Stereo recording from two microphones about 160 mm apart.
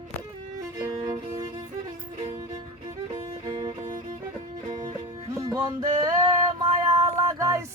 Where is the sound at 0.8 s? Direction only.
20° right (ahead or behind).